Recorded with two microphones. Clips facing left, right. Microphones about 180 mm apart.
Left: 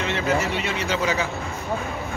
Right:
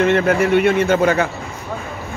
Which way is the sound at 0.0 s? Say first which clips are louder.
Right 9 dB; 55° right (ahead or behind).